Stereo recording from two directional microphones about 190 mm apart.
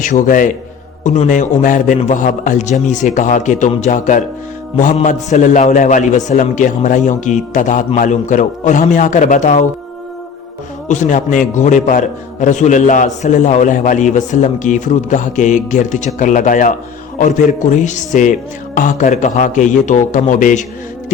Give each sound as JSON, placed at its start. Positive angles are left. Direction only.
{"t": 0.0, "sound": "a man's voice", "side_deg": 40}
{"t": 10.8, "sound": "a man's voice", "side_deg": 40}